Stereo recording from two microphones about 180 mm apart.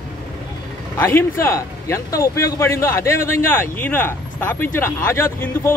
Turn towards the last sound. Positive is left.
turn(degrees=10)  # may be behind; listen again after turning